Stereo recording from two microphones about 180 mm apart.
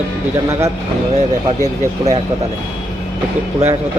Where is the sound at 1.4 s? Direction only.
20° right (ahead or behind).